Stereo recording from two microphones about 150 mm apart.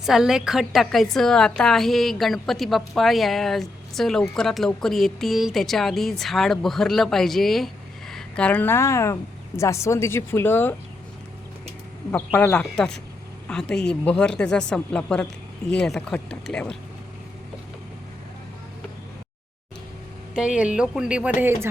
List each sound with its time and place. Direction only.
0.0 s a woman's voice: 5° right (ahead or behind); by 10.8 s 15° left (ahead or behind)
12.1 s a woman's voice: 10° left (ahead or behind)
20.3 s speech: 5° right (ahead or behind)